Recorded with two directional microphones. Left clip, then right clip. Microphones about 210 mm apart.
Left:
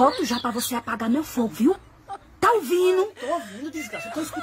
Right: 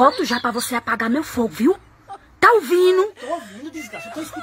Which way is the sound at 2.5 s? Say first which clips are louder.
Right 4 dB; 10° right (ahead or behind).